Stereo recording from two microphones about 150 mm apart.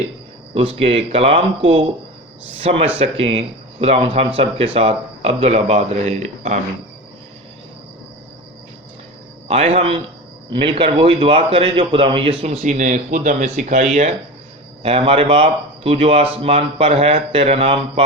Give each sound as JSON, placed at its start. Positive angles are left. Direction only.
{"t": 0.5, "sound": "a man's voice", "side_deg": -40}
{"t": 9.5, "sound": "a man's voice", "side_deg": -45}
{"t": 14.8, "sound": "a man's voice", "side_deg": -40}